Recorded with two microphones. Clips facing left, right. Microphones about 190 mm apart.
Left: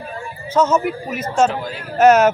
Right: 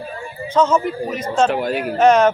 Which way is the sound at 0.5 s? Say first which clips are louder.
Even; 5° left (ahead or behind).